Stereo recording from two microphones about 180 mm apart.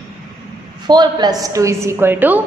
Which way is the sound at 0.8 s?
25° right (ahead or behind).